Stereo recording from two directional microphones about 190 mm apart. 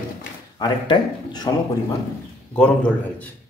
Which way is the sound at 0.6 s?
25° left (ahead or behind).